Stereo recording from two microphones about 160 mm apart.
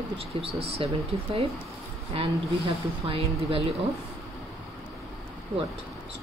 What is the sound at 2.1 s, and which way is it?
Speech, 35° right (ahead or behind).